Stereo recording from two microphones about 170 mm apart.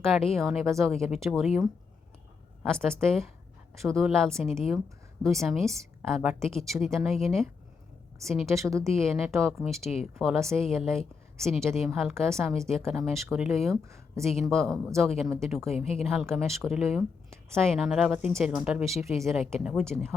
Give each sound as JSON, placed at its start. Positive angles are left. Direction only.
{"t": 0.0, "sound": "a woman's voice", "side_deg": 0}
{"t": 2.8, "sound": "a woman's voice", "side_deg": 5}
{"t": 8.4, "sound": "a woman's voice", "side_deg": -15}
{"t": 9.0, "sound": "a woman's voice", "side_deg": 0}
{"t": 15.8, "sound": "a woman's voice", "side_deg": 35}
{"t": 16.3, "sound": "a woman's voice", "side_deg": 0}